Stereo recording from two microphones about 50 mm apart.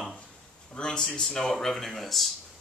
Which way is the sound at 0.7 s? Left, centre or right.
Centre.